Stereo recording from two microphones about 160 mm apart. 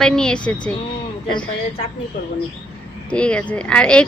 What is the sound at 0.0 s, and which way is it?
Speech, 5° left (ahead or behind).